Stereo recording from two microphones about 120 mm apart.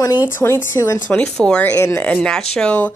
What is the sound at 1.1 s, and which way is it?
Speech, 10° left (ahead or behind).